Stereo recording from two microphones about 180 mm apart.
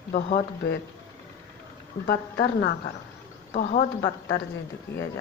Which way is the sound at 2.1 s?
65° left (ahead or behind).